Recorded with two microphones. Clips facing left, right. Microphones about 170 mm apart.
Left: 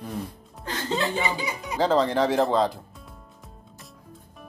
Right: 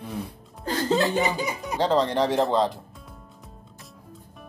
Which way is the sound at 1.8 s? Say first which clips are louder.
Left 1 dB; centre (ahead or behind).